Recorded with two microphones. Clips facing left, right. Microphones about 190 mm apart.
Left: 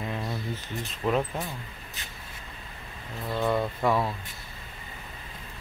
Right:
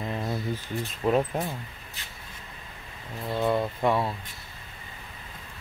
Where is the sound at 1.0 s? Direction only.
15° right (ahead or behind).